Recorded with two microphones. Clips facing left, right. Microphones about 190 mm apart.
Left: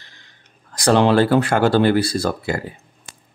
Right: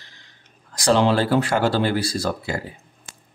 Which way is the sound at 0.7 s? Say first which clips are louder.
Left 3 dB; 60° left (ahead or behind).